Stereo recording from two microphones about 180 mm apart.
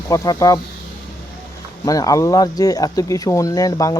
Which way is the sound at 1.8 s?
20° left (ahead or behind).